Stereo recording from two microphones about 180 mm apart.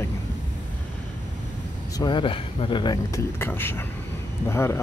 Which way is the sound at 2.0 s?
25° left (ahead or behind).